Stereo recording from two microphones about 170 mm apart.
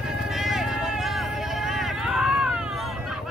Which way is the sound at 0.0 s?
Centre (ahead or behind).